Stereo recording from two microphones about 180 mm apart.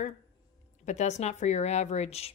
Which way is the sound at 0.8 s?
40° left (ahead or behind).